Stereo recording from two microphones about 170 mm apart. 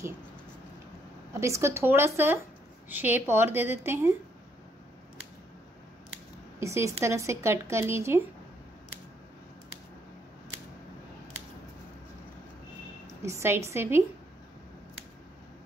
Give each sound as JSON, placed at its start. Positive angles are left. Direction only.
{"t": 1.4, "sound": "speech", "side_deg": -15}
{"t": 6.6, "sound": "speech", "side_deg": -15}
{"t": 13.2, "sound": "a woman's voice", "side_deg": -15}